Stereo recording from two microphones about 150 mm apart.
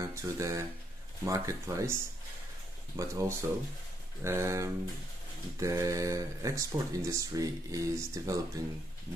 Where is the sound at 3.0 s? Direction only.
20° right (ahead or behind).